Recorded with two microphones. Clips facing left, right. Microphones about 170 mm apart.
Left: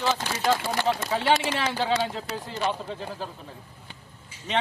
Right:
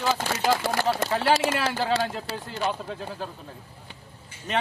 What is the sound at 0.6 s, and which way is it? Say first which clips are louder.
Speech: right 2 dB; 70° right (ahead or behind).